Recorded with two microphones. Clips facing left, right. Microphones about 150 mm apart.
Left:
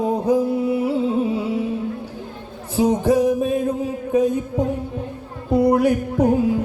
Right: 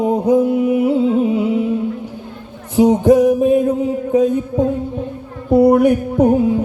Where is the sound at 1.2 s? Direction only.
20° right (ahead or behind).